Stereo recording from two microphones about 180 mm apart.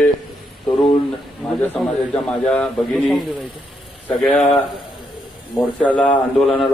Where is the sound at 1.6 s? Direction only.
10° left (ahead or behind).